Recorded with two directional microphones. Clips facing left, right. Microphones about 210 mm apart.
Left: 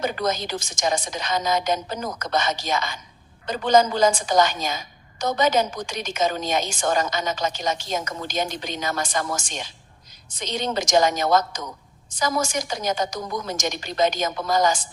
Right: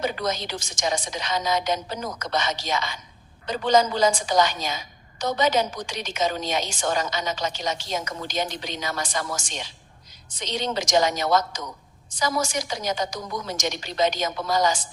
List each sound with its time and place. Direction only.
0.0 s a woman's voice: 50° left (ahead or behind)